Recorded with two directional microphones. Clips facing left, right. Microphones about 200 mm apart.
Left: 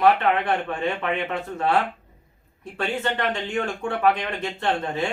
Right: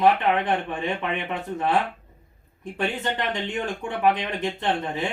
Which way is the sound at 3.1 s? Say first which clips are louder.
Left 2 dB; 20° right (ahead or behind).